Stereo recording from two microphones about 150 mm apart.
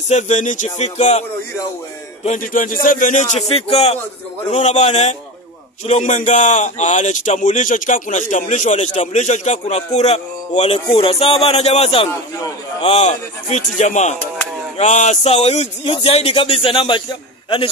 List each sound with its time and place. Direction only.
0.1 s a man's voice: 55° left (ahead or behind)
2.2 s a man's voice: 65° left (ahead or behind); by 17.0 s 35° left (ahead or behind)